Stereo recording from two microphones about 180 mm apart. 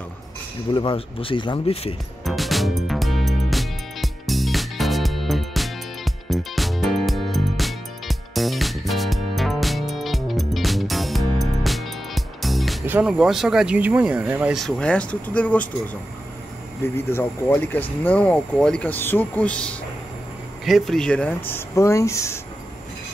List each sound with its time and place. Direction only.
0.7 s speech: 30° left (ahead or behind)
2.2 s music: centre (ahead or behind)
12.8 s speech: 10° right (ahead or behind); by 15.7 s 10° left (ahead or behind)
16.8 s speech: 15° left (ahead or behind)